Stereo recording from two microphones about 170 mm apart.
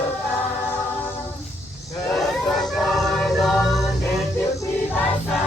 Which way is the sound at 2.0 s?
5° left (ahead or behind).